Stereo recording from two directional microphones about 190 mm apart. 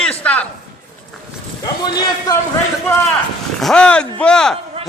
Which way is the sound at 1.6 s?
20° left (ahead or behind).